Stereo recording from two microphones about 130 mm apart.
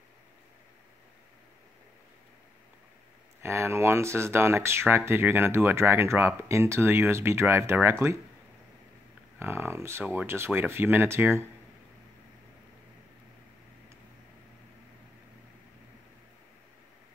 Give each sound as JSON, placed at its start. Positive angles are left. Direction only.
{"t": 3.4, "sound": "speech", "side_deg": -20}
{"t": 9.4, "sound": "speech", "side_deg": -20}